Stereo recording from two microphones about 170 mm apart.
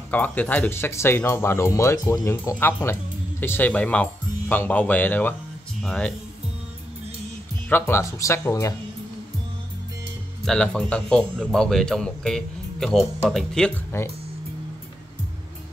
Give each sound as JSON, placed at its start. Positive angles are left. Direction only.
{"t": 0.1, "sound": "speech", "side_deg": 10}
{"t": 7.7, "sound": "speech", "side_deg": 15}
{"t": 10.4, "sound": "speech", "side_deg": 5}
{"t": 13.9, "sound": "speech", "side_deg": 15}